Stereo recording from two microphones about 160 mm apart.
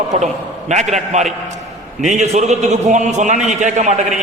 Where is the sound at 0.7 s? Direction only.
45° right (ahead or behind).